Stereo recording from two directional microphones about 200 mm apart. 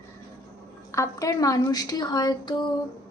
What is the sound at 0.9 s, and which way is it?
Speech, 15° left (ahead or behind).